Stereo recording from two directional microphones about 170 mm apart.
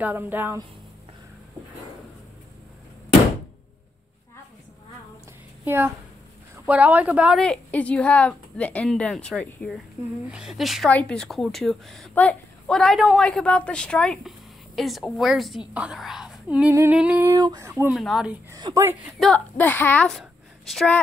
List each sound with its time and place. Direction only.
0.0 s speech: 10° right (ahead or behind)
5.7 s a woman's voice: 10° right (ahead or behind)
17.3 s speech: 20° right (ahead or behind)
17.9 s a woman's voice: centre (ahead or behind)
18.5 s a woman's voice: 20° right (ahead or behind)
19.1 s a child's voice: 5° left (ahead or behind)